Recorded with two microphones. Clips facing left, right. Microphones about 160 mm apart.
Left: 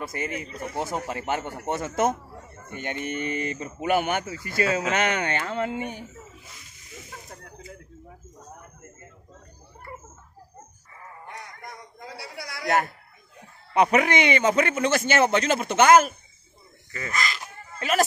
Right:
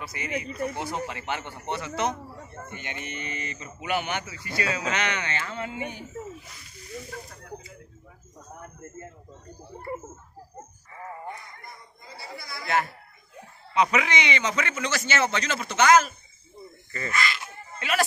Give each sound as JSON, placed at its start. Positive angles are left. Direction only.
{"t": 0.0, "sound": "a man's voice", "side_deg": 50}
{"t": 11.2, "sound": "a sound", "side_deg": 80}
{"t": 12.6, "sound": "a man's voice", "side_deg": 45}
{"t": 17.1, "sound": "speech", "side_deg": 40}